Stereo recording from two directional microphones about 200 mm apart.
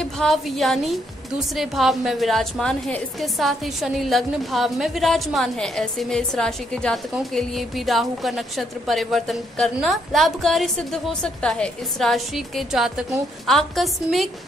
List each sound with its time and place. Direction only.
0.0 s a woman's voice: centre (ahead or behind)